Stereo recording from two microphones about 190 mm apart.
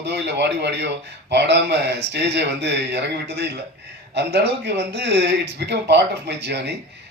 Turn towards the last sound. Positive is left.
turn(degrees=-65)  # may be behind; listen again after turning